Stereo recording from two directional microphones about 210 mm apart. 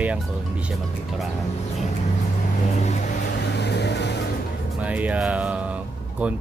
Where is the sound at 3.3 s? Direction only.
55° left (ahead or behind).